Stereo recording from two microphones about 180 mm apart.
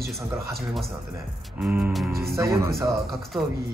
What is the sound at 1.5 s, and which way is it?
Speech, 10° right (ahead or behind).